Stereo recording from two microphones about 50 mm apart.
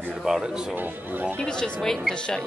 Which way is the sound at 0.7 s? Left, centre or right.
Right.